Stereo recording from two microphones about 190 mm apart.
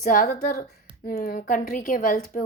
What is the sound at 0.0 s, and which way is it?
A woman's voice, 45° left (ahead or behind).